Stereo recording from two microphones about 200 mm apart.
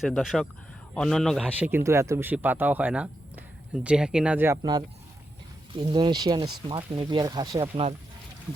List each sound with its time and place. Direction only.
0.0 s a man's voice: centre (ahead or behind)
1.5 s speech: 10° right (ahead or behind); by 7.9 s 25° right (ahead or behind)